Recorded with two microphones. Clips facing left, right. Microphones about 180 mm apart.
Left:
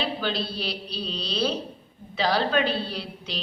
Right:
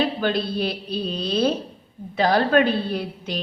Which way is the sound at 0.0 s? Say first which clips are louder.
Right 6 dB; 50° right (ahead or behind).